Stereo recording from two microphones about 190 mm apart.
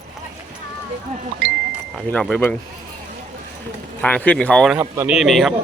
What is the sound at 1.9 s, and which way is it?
Speech, 5° left (ahead or behind).